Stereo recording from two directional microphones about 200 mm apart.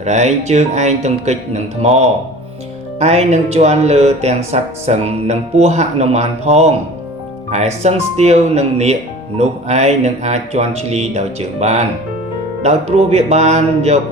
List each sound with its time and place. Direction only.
0.0 s speech: 35° right (ahead or behind)